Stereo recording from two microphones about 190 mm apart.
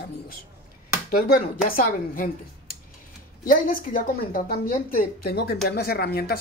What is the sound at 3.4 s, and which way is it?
Speech, 45° left (ahead or behind).